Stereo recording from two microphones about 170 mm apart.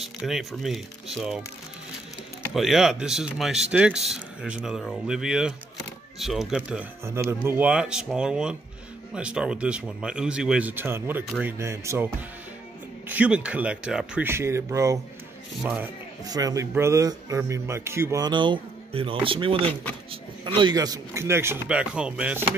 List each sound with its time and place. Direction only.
0.0 s speech: centre (ahead or behind)
2.5 s speech: centre (ahead or behind)
13.1 s speech: 5° right (ahead or behind)
15.6 s speech: 5° right (ahead or behind)
16.3 s speech: 20° right (ahead or behind)